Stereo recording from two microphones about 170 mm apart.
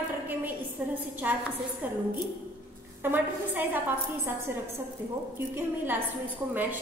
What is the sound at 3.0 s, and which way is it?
A woman's voice, 10° right (ahead or behind).